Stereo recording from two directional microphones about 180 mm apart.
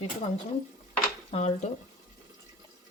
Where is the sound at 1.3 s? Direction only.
35° left (ahead or behind).